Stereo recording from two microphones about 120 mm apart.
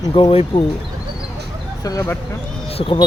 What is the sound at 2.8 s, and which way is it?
Speech, 45° left (ahead or behind).